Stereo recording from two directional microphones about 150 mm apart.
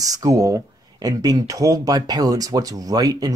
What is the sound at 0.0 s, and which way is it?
Speech, 25° right (ahead or behind).